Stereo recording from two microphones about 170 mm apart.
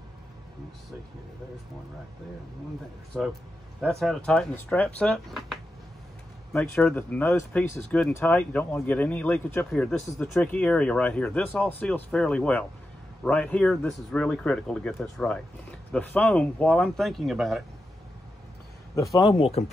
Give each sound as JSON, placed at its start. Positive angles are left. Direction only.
{"t": 3.1, "sound": "speech", "side_deg": 0}
{"t": 6.7, "sound": "speech", "side_deg": 5}
{"t": 19.1, "sound": "speech", "side_deg": 30}